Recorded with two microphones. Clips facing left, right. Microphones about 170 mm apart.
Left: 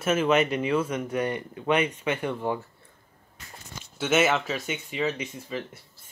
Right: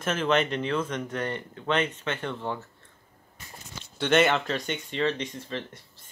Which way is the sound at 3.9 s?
5° left (ahead or behind).